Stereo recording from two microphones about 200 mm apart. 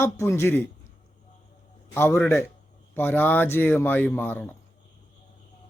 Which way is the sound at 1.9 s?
10° left (ahead or behind).